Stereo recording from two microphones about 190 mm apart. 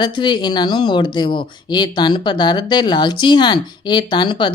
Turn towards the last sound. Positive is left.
turn(degrees=25)  # may be behind; listen again after turning